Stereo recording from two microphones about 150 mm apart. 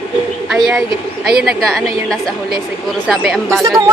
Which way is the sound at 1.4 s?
Centre (ahead or behind).